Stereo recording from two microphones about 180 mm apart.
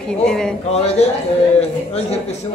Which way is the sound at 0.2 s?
5° left (ahead or behind).